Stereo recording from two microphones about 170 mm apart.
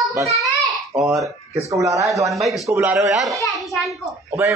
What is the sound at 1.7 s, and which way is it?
Speech, 20° right (ahead or behind).